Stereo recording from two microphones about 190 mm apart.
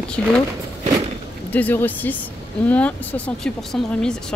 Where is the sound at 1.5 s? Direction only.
10° left (ahead or behind).